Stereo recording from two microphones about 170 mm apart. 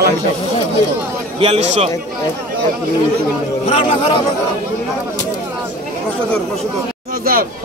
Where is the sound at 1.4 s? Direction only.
40° right (ahead or behind).